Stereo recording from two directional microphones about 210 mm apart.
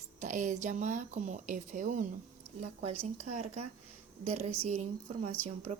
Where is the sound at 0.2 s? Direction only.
35° right (ahead or behind).